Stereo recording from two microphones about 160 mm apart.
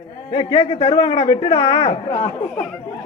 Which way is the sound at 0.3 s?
30° left (ahead or behind).